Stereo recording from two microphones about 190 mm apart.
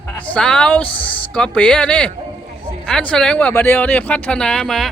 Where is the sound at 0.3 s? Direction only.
5° left (ahead or behind).